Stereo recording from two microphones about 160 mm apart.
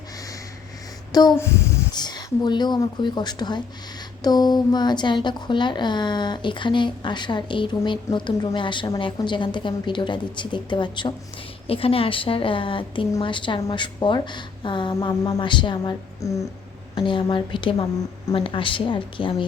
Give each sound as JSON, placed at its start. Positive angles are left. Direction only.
{"t": 1.1, "sound": "a woman's voice", "side_deg": 25}